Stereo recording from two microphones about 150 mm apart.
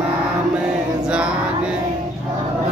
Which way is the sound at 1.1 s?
5° right (ahead or behind).